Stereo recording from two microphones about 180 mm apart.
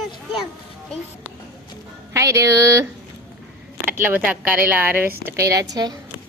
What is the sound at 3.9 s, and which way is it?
Speech, 10° right (ahead or behind).